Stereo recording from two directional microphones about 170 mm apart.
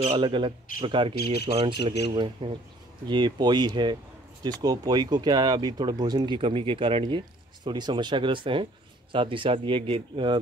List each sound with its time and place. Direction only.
0.2 s a man's voice: 30° right (ahead or behind)